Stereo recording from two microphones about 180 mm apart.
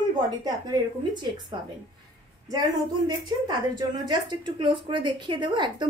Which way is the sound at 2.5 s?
20° right (ahead or behind).